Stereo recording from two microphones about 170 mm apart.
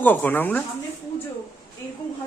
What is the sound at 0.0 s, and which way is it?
Speech, 10° left (ahead or behind).